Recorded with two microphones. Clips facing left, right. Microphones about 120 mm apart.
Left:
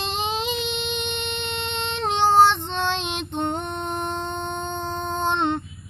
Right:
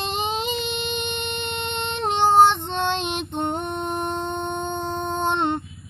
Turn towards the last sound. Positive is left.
turn(degrees=-5)  # may be behind; listen again after turning